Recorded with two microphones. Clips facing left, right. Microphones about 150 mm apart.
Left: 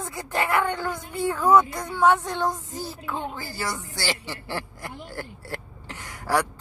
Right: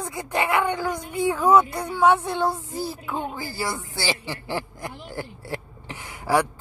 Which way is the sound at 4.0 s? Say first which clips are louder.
Right 3 dB; 15° right (ahead or behind).